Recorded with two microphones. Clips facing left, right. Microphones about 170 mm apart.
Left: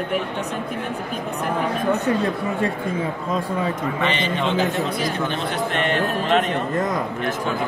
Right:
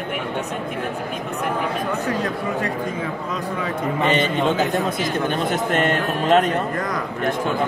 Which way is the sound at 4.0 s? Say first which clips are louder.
Right 5 dB; 45° right (ahead or behind).